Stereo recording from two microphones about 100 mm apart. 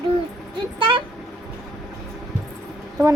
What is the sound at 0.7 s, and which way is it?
Speech, 60° right (ahead or behind).